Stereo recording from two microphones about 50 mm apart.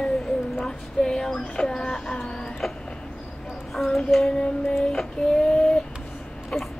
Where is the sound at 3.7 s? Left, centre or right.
Centre.